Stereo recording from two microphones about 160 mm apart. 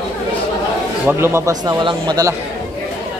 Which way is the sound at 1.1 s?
15° right (ahead or behind).